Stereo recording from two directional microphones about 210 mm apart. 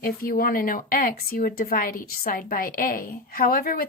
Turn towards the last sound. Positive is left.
turn(degrees=45)  # may be behind; listen again after turning